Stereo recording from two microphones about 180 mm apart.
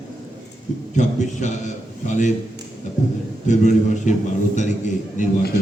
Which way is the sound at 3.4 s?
40° left (ahead or behind).